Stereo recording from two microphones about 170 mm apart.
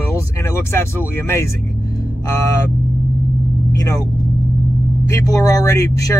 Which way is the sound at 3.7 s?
20° left (ahead or behind).